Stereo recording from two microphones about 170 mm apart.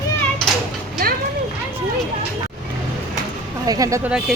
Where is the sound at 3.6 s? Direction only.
20° right (ahead or behind).